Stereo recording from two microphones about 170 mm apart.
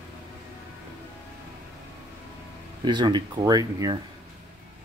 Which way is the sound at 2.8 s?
25° right (ahead or behind).